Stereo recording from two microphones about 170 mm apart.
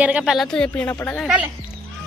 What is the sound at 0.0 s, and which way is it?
A woman's voice, 5° right (ahead or behind).